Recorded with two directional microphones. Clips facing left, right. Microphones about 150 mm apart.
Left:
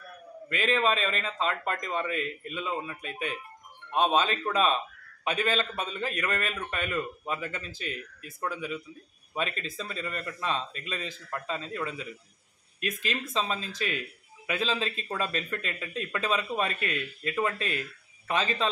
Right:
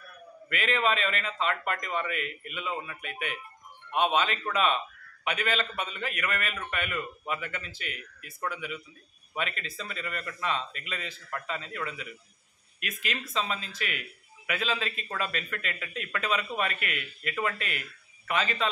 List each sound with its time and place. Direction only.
0.5 s a man's voice: 30° left (ahead or behind)